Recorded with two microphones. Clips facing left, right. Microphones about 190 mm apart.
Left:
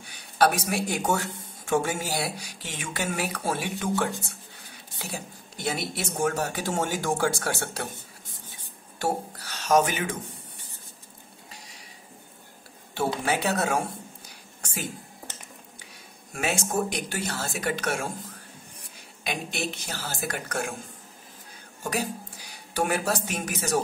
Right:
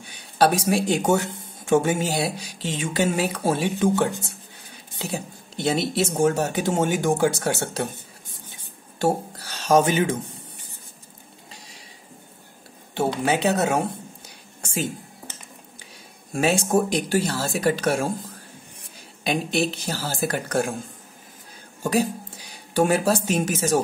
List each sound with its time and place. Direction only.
0.4 s speech: 25° right (ahead or behind)
9.0 s speech: 30° right (ahead or behind)
13.2 s speech: 20° right (ahead or behind)
14.6 s a sound: 25° right (ahead or behind)
16.3 s speech: 30° right (ahead or behind)
19.2 s speech: 30° right (ahead or behind)
22.8 s speech: 30° right (ahead or behind)